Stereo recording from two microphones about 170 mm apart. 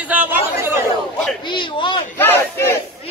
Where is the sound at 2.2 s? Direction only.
10° left (ahead or behind).